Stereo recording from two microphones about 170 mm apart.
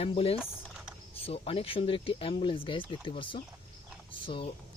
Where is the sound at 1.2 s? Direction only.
35° left (ahead or behind).